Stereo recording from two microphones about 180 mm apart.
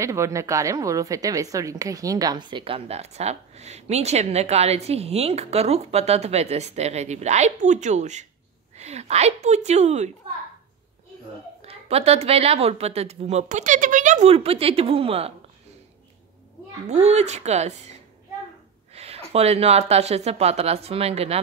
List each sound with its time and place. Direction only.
0.0 s a woman's voice: 15° right (ahead or behind); by 10.1 s 40° right (ahead or behind)
11.6 s a woman's voice: 35° right (ahead or behind)
16.8 s a woman's voice: 40° right (ahead or behind)
18.9 s a woman's voice: 35° right (ahead or behind)